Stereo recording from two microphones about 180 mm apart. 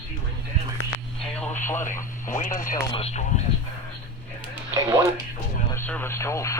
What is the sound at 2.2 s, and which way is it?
Speech, 45° left (ahead or behind).